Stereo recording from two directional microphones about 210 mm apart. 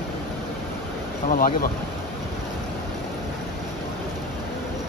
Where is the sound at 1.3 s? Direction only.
40° left (ahead or behind).